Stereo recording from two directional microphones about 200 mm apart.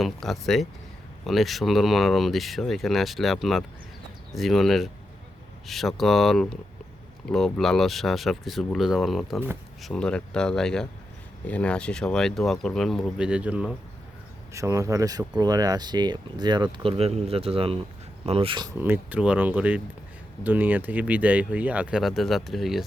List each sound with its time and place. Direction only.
0.0 s speech: centre (ahead or behind); by 18.7 s 25° right (ahead or behind)
18.8 s speech: 10° right (ahead or behind)